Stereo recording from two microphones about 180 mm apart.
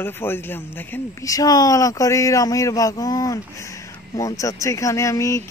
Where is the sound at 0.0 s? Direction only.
10° left (ahead or behind).